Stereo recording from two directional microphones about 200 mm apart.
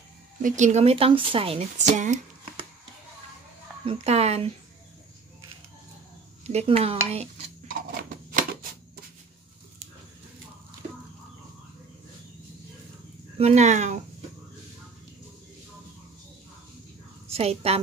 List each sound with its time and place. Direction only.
0.4 s speech: 40° right (ahead or behind)
3.8 s speech: 30° right (ahead or behind)
6.4 s dishes: 30° right (ahead or behind)
13.4 s speech: 35° right (ahead or behind)
17.3 s a woman's voice: 30° right (ahead or behind)